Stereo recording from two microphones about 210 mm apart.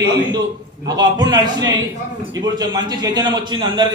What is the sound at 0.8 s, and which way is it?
A man's voice, 20° right (ahead or behind).